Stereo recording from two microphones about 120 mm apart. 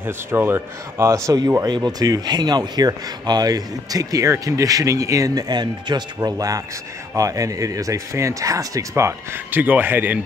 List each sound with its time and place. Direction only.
0.0 s speech: 20° right (ahead or behind)